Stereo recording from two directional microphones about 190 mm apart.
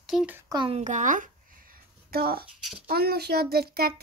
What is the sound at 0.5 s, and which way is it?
A child's voice, 25° right (ahead or behind).